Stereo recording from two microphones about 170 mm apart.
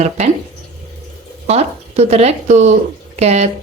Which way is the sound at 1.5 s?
40° right (ahead or behind).